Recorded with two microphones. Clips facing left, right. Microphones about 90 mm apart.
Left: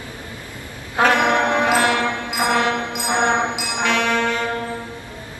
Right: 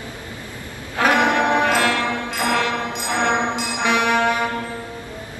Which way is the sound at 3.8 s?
15° right (ahead or behind).